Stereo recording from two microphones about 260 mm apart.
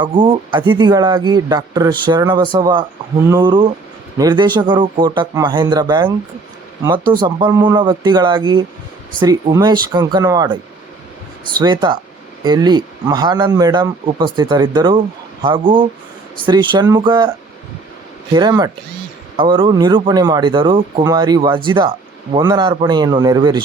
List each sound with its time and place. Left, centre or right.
0.0 s speech: centre
11.6 s speech: centre
18.3 s speech: centre